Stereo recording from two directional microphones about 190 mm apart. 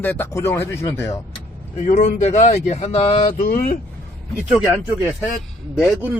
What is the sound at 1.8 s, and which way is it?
Speech, 40° left (ahead or behind).